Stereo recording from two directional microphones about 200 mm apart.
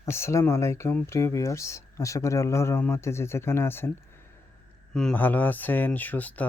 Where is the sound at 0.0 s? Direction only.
15° left (ahead or behind).